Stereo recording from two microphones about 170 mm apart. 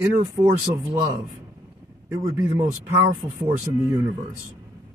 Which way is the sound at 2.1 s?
20° right (ahead or behind).